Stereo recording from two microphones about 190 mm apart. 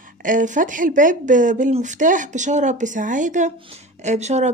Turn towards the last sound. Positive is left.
turn(degrees=-35)  # may be behind; listen again after turning